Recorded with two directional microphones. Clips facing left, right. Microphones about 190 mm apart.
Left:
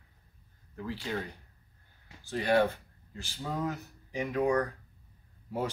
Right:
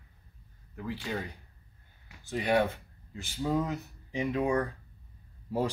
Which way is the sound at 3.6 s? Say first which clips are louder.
Even; 20° right (ahead or behind).